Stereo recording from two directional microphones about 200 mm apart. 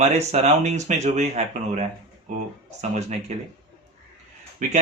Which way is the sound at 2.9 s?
35° right (ahead or behind).